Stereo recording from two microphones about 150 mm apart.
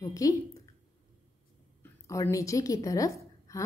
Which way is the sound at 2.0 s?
20° left (ahead or behind).